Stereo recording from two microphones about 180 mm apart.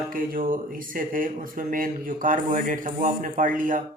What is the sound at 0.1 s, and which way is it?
Speech, 50° right (ahead or behind).